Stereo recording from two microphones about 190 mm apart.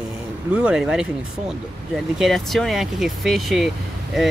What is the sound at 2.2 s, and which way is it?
Speech, centre (ahead or behind).